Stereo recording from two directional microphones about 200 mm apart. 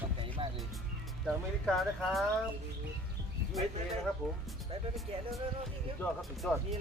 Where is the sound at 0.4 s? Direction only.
25° right (ahead or behind).